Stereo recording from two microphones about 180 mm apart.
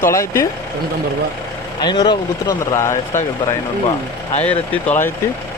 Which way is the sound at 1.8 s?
25° left (ahead or behind).